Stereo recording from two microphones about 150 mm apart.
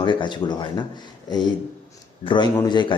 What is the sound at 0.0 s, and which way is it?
Speech, 30° left (ahead or behind).